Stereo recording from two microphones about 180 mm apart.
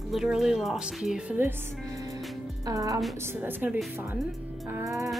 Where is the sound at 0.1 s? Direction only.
Centre (ahead or behind).